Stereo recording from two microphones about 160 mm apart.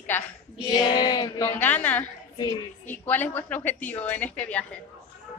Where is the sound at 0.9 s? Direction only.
25° left (ahead or behind).